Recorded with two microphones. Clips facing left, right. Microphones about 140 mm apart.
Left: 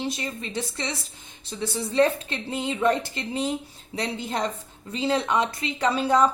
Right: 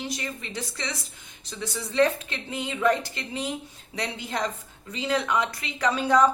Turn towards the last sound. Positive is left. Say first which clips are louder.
# left 1 dB
turn(degrees=30)  # may be behind; listen again after turning